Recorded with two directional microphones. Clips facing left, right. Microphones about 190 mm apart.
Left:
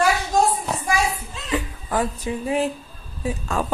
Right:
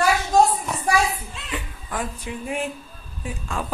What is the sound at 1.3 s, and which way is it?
Speech, 40° left (ahead or behind).